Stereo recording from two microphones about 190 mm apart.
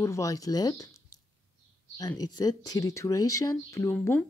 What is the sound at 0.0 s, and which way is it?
Speech, 15° left (ahead or behind).